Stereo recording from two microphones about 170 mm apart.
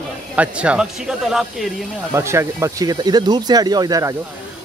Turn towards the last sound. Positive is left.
turn(degrees=-20)  # may be behind; listen again after turning